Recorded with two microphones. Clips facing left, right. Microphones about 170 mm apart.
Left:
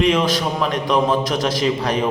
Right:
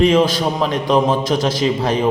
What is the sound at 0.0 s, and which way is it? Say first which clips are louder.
A man's voice: right 4 dB; 30° right (ahead or behind).